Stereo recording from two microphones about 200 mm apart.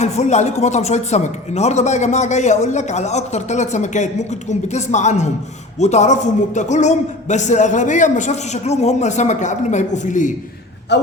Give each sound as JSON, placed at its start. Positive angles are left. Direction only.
{"t": 0.0, "sound": "speech", "side_deg": 35}
{"t": 10.9, "sound": "speech", "side_deg": 60}